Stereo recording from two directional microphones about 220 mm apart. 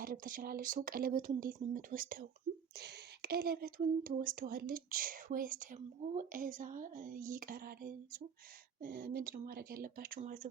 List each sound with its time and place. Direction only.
0.0 s speech: 40° right (ahead or behind)